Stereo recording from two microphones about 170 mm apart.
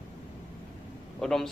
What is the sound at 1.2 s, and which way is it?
Speech, centre (ahead or behind).